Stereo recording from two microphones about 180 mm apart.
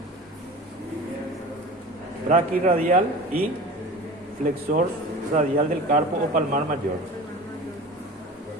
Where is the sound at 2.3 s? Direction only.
45° right (ahead or behind).